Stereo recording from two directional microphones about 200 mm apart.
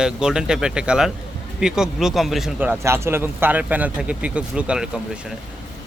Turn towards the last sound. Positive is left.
turn(degrees=-5)  # may be behind; listen again after turning